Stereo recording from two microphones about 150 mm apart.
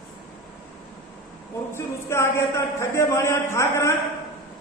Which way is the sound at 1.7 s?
15° left (ahead or behind).